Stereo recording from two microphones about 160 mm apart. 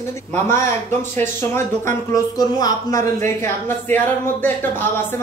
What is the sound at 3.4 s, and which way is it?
A man's voice, 10° left (ahead or behind).